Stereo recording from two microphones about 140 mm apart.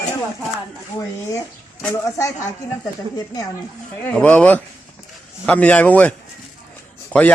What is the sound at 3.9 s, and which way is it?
Speech, 10° left (ahead or behind).